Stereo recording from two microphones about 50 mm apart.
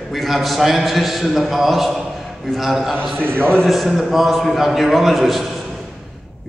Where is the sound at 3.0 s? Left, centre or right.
Right.